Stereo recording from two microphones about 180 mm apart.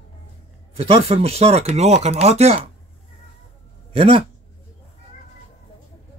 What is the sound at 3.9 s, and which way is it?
Speech, 35° right (ahead or behind).